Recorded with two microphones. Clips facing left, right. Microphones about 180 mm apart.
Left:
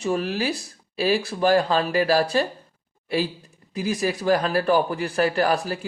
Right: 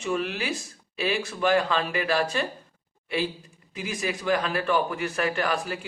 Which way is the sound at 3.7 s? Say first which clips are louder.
Left 6 dB; 40° left (ahead or behind).